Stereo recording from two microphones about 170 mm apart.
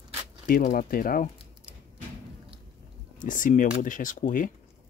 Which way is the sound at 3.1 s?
50° left (ahead or behind).